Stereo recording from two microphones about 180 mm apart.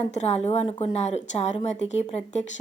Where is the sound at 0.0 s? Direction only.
35° left (ahead or behind).